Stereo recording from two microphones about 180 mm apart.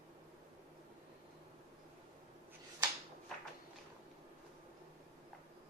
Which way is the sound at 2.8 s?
20° right (ahead or behind).